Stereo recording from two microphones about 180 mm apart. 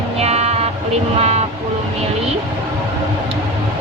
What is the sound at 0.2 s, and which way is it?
Music, 35° right (ahead or behind).